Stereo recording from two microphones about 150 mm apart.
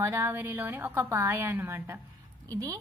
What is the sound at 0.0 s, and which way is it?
A woman's voice, 20° right (ahead or behind).